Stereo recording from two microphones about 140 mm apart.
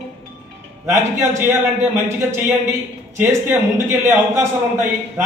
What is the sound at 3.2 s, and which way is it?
A man's voice, 15° right (ahead or behind).